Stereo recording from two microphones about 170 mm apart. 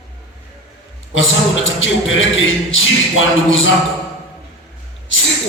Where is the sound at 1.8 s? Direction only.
90° left.